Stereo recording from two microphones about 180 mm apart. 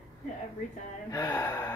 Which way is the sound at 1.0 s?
20° left (ahead or behind).